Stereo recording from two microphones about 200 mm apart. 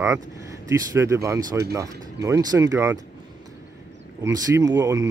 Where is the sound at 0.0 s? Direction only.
15° right (ahead or behind).